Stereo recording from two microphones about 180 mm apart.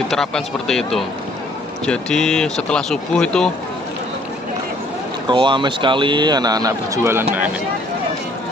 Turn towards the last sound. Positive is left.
turn(degrees=-15)  # may be behind; listen again after turning